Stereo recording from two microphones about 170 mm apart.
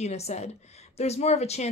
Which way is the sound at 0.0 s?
40° left (ahead or behind).